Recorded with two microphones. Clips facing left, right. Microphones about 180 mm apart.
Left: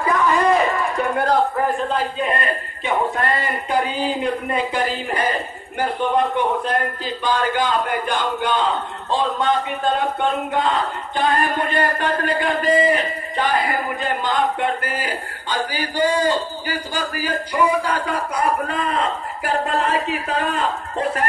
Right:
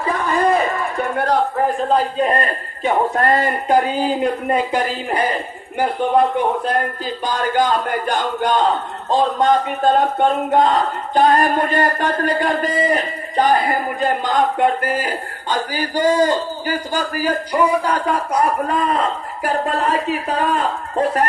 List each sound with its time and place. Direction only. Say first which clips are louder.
0.2 s a sound: right 1 dB; 55° right (ahead or behind)
1.9 s a man's voice: right 5 dB; 40° right (ahead or behind)
7.2 s a man's voice: right 2 dB; 45° right (ahead or behind)